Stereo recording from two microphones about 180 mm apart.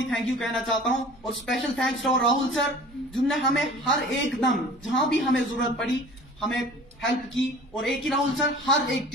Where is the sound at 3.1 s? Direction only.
Centre (ahead or behind).